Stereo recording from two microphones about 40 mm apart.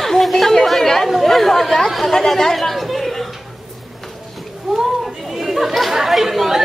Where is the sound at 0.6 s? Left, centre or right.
Centre.